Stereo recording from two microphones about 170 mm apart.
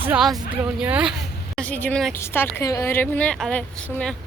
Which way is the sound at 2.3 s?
15° left (ahead or behind).